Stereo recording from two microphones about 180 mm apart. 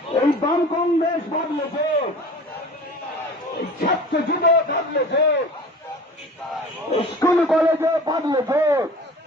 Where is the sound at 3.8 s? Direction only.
55° left (ahead or behind).